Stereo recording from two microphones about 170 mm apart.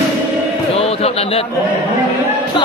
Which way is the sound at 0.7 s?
35° left (ahead or behind).